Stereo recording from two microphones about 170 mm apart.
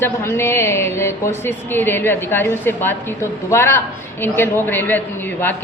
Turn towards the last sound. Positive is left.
turn(degrees=10)  # may be behind; listen again after turning